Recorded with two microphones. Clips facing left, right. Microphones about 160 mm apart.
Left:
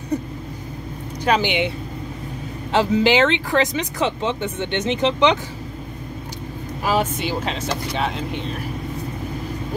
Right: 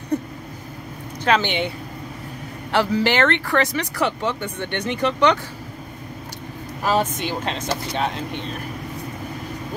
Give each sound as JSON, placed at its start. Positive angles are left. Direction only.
{"t": 1.2, "sound": "speech", "side_deg": 10}
{"t": 2.7, "sound": "speech", "side_deg": 20}
{"t": 6.8, "sound": "speech", "side_deg": 10}